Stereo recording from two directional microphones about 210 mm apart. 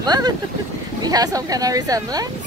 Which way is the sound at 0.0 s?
20° right (ahead or behind).